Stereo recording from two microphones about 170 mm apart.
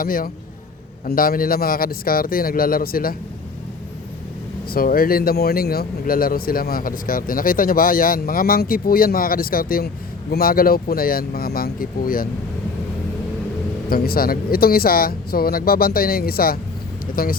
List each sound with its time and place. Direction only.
0.0 s speech: 55° left (ahead or behind)
4.7 s speech: 60° left (ahead or behind)
13.9 s speech: 60° left (ahead or behind)